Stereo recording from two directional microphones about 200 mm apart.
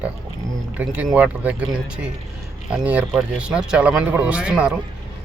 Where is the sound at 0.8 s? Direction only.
5° right (ahead or behind).